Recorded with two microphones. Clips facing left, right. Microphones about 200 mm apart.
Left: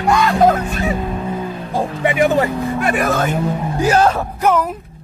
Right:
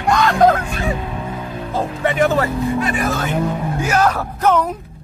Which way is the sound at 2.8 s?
60° left (ahead or behind).